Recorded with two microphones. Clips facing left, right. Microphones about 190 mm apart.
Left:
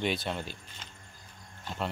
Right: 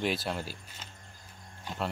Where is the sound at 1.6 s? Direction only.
5° right (ahead or behind).